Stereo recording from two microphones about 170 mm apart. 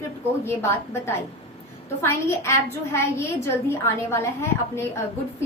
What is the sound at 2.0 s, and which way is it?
A child's voice, 15° left (ahead or behind).